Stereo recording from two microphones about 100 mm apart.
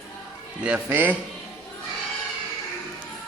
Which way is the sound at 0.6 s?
10° right (ahead or behind).